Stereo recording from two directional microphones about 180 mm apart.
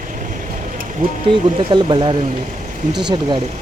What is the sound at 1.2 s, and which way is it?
Speech, 25° right (ahead or behind).